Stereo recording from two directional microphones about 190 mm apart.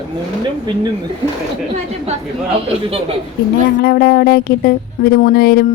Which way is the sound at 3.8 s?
55° left (ahead or behind).